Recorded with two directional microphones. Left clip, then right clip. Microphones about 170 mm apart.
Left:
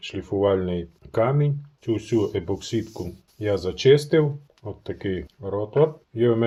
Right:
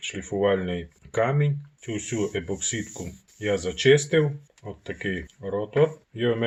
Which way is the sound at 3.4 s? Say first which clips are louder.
Left 1 dB; 35° left (ahead or behind).